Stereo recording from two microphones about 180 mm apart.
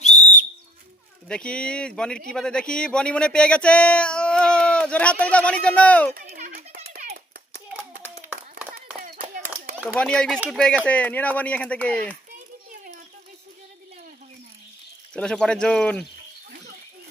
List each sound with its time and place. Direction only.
0.0 s whistle: 40° left (ahead or behind)
1.3 s speech: 5° left (ahead or behind)
6.2 s a sound: 45° right (ahead or behind)
9.0 s a sound: 50° right (ahead or behind)
9.9 s speech: 5° left (ahead or behind)
15.1 s speech: 5° left (ahead or behind)